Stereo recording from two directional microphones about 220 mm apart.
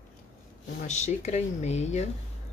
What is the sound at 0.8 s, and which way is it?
Speech, 30° left (ahead or behind).